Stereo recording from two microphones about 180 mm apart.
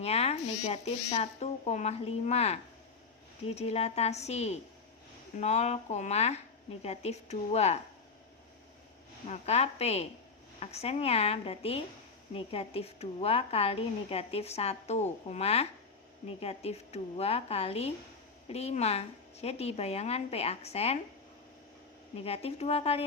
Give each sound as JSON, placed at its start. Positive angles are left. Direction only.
{"t": 0.0, "sound": "a woman's voice", "side_deg": 35}
{"t": 9.2, "sound": "a woman's voice", "side_deg": 40}
{"t": 22.1, "sound": "a woman's voice", "side_deg": 35}